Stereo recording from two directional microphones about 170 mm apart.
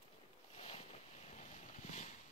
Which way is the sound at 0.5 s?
35° left (ahead or behind).